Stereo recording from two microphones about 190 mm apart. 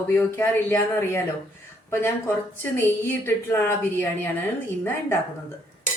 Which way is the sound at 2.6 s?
10° left (ahead or behind).